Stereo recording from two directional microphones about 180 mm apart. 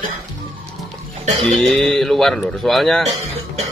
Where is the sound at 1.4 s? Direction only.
Centre (ahead or behind).